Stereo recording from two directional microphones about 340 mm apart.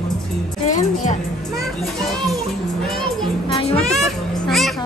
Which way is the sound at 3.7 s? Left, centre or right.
Centre.